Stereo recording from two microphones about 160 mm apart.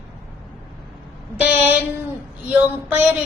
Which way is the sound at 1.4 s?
10° right (ahead or behind).